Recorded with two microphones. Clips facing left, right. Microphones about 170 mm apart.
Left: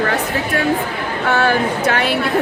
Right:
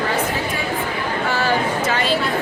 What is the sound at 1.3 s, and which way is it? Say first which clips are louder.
Speech: left 5 dB; 65° left (ahead or behind).